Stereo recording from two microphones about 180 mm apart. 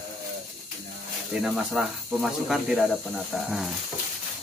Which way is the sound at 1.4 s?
Centre (ahead or behind).